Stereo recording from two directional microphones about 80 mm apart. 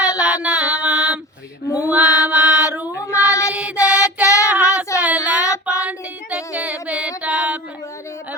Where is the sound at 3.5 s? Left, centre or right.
Centre.